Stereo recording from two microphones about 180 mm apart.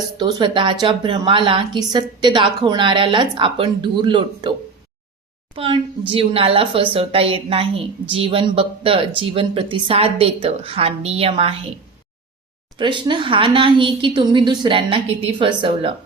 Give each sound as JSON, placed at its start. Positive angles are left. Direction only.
{"t": 0.2, "sound": "a woman's voice", "side_deg": -25}
{"t": 5.5, "sound": "a woman's voice", "side_deg": -30}
{"t": 12.8, "sound": "a woman's voice", "side_deg": -25}